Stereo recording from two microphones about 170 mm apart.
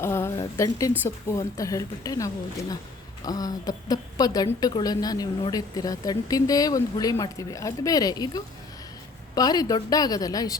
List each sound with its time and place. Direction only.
0.0 s a woman's voice: 15° left (ahead or behind)